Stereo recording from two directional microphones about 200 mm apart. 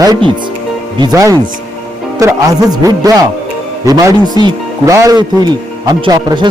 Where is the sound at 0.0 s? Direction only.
20° right (ahead or behind).